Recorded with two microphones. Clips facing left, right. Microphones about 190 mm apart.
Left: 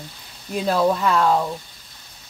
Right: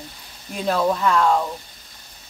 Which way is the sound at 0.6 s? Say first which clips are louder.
Left 1 dB; 10° left (ahead or behind).